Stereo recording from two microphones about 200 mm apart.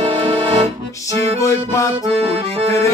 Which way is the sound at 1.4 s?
15° left (ahead or behind).